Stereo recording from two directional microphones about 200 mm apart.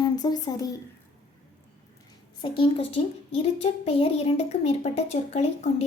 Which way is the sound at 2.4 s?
25° left (ahead or behind).